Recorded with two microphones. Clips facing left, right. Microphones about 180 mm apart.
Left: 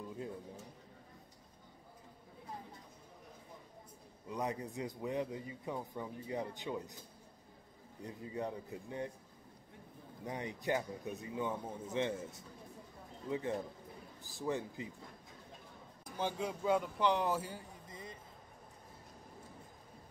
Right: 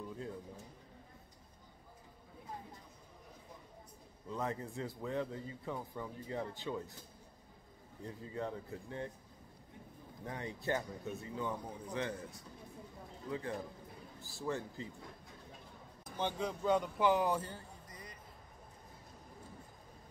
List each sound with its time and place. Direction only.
4.3 s a man's voice: 15° left (ahead or behind)
8.0 s a man's voice: 15° left (ahead or behind)
10.2 s a man's voice: 20° left (ahead or behind)
16.2 s a man's voice: 5° left (ahead or behind)
17.4 s a man's voice: 10° left (ahead or behind)
17.8 s vehicle: 25° left (ahead or behind)